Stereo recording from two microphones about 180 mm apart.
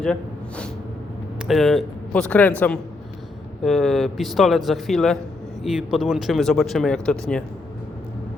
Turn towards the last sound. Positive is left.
turn(degrees=5)  # may be behind; listen again after turning